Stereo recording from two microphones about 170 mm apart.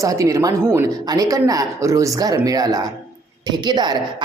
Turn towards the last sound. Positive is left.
turn(degrees=-25)  # may be behind; listen again after turning